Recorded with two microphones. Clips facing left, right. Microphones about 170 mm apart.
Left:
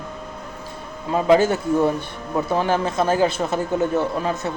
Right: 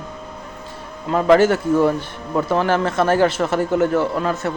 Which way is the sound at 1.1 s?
15° left (ahead or behind).